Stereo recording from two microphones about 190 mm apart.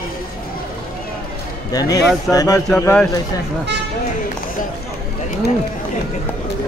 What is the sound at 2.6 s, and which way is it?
Speech, 5° left (ahead or behind).